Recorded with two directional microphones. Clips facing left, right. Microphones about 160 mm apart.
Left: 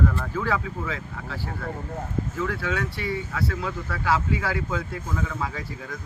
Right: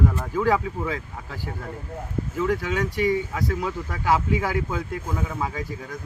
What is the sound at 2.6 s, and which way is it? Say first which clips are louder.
Speech: right 5 dB; 15° right (ahead or behind).